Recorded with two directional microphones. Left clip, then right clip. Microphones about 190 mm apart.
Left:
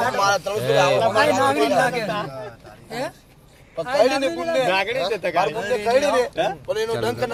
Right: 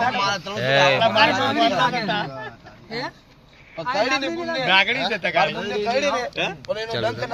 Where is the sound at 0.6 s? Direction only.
15° left (ahead or behind).